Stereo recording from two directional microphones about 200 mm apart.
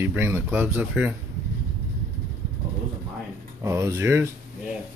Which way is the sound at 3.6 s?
15° right (ahead or behind).